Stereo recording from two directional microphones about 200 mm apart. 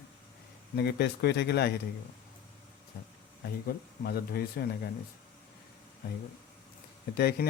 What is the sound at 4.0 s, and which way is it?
Speech, 50° left (ahead or behind).